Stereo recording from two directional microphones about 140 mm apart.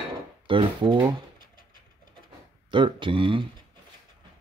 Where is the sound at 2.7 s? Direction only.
35° right (ahead or behind).